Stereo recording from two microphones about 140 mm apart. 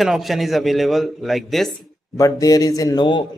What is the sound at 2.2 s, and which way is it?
Speech, 25° left (ahead or behind).